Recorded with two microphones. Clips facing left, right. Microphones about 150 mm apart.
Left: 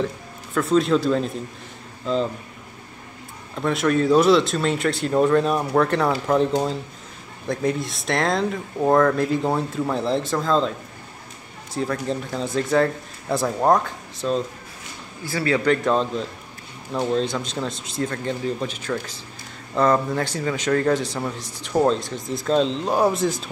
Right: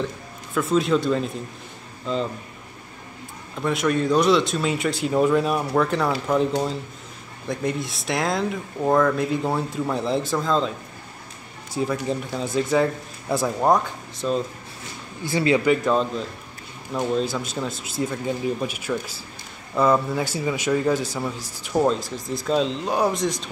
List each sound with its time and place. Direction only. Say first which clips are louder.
0.6 s speech: left 2 dB; centre (ahead or behind)
3.5 s speech: left 2 dB; centre (ahead or behind)
11.7 s speech: even; 5° right (ahead or behind)
15.2 s speech: right 2 dB; 20° right (ahead or behind)
15.6 s speech: even; 5° right (ahead or behind)